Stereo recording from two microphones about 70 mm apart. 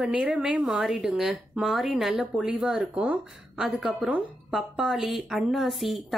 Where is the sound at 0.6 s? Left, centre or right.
Centre.